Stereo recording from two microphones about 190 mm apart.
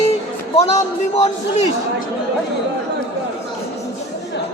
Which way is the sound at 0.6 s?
35° left (ahead or behind).